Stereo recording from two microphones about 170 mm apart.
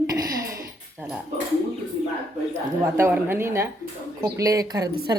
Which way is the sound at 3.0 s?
15° right (ahead or behind).